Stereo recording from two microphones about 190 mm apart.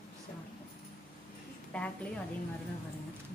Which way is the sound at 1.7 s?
5° left (ahead or behind).